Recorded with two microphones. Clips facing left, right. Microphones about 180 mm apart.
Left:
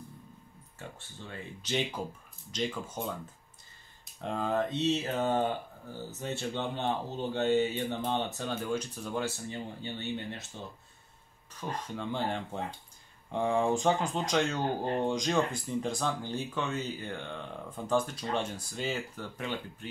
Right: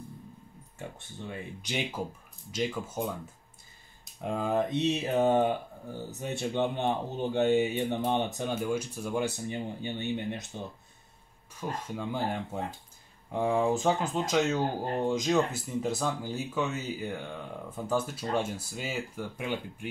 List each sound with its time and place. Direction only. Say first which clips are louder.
0.7 s speech: right 4 dB; 15° right (ahead or behind)
4.2 s speech: right 2 dB; 10° right (ahead or behind)
11.7 s speech: even; 10° right (ahead or behind)